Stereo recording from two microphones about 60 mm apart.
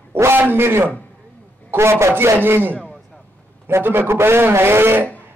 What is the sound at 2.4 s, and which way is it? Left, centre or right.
A man's voice, right.